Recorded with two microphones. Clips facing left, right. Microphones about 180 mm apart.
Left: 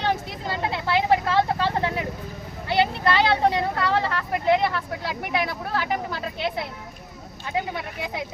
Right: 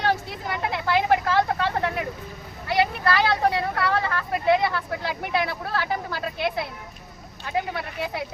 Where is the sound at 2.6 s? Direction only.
25° left (ahead or behind).